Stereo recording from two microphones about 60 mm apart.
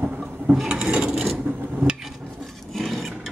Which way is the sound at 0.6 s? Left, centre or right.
Centre.